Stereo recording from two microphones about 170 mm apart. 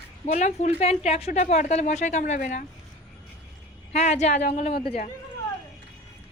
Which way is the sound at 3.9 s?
40° left (ahead or behind).